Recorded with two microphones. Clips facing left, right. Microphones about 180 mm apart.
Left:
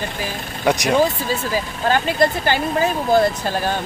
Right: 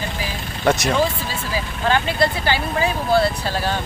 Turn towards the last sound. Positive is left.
turn(degrees=45)  # may be behind; listen again after turning